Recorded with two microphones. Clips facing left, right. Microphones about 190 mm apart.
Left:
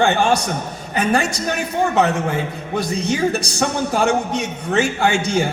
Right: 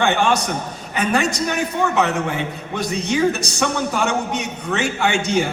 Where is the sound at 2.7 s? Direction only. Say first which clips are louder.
Even; 35° left (ahead or behind).